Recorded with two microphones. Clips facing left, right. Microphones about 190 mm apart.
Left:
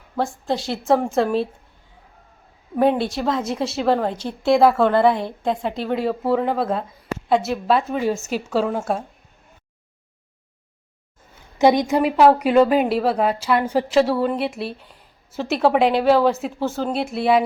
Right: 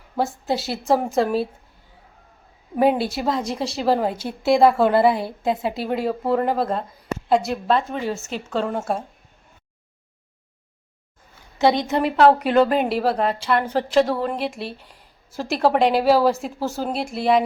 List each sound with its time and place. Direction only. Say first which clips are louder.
0.2 s a woman's voice: even; 5° right (ahead or behind)
2.7 s a woman's voice: even; 5° right (ahead or behind)
11.6 s a woman's voice: left 3 dB; 15° left (ahead or behind)
11.9 s a woman's voice: left 1 dB; 5° left (ahead or behind)